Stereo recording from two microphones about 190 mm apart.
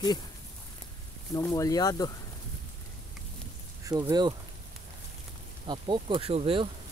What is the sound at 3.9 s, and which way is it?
Speech, 20° right (ahead or behind).